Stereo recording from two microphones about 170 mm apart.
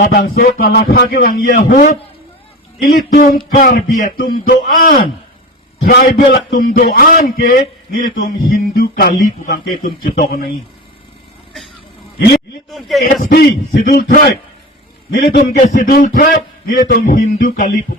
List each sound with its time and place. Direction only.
0.0 s a man's voice: 55° left (ahead or behind)
13.3 s a man's voice: 60° left (ahead or behind)